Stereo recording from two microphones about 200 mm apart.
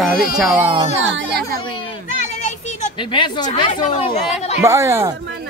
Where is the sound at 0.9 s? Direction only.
65° right (ahead or behind).